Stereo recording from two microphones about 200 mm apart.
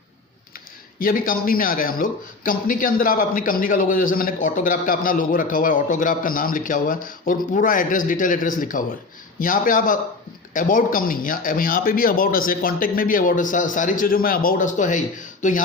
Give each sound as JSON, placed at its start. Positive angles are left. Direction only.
{"t": 0.9, "sound": "speech", "side_deg": 45}